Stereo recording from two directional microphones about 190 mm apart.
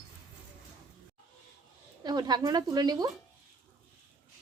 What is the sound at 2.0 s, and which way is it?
Speech, 20° right (ahead or behind).